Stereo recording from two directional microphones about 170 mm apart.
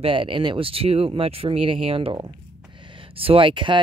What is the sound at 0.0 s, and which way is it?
Speech, 30° right (ahead or behind).